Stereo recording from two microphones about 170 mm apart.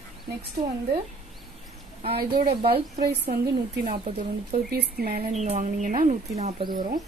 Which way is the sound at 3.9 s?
60° right (ahead or behind).